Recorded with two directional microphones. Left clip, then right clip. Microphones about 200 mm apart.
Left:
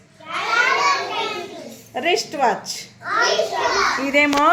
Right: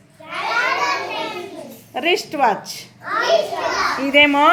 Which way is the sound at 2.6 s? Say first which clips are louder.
Left 1 dB; 55° right (ahead or behind).